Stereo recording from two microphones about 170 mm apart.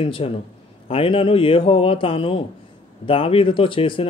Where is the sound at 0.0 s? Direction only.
30° left (ahead or behind).